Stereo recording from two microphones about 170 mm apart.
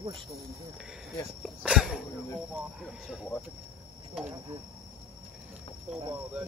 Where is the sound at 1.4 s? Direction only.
5° right (ahead or behind).